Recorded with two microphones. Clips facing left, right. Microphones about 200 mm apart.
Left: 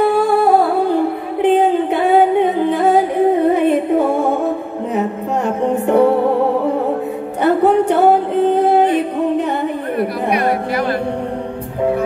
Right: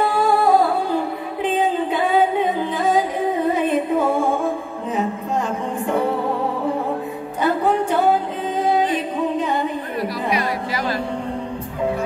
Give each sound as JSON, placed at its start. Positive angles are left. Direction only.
{"t": 0.0, "sound": "music", "side_deg": 60}
{"t": 5.6, "sound": "music", "side_deg": 65}
{"t": 7.4, "sound": "music", "side_deg": 65}
{"t": 9.9, "sound": "chatter", "side_deg": 55}